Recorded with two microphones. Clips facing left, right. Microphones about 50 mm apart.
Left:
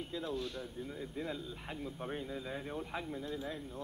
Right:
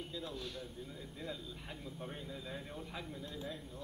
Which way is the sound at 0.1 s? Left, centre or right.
Left.